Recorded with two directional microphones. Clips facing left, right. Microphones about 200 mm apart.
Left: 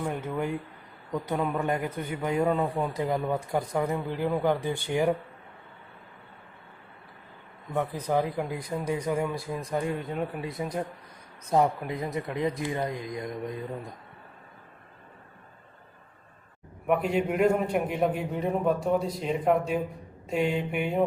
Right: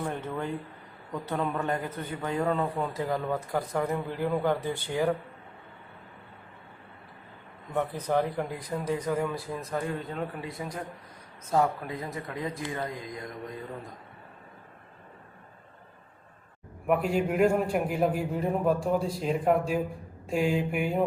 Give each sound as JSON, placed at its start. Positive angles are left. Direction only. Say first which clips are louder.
{"t": 0.0, "sound": "speech", "louder": "left 2 dB", "side_deg": 10}
{"t": 7.7, "sound": "speech", "louder": "even", "side_deg": 5}
{"t": 16.8, "sound": "a man's voice", "louder": "even", "side_deg": -5}